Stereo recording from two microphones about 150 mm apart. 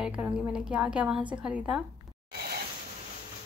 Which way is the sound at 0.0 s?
5° right (ahead or behind).